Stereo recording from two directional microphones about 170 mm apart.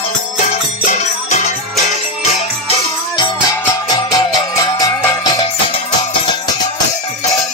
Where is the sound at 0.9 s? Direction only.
45° left (ahead or behind).